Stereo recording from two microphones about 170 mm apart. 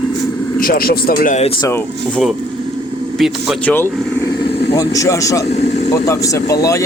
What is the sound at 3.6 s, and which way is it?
Speech, 15° left (ahead or behind).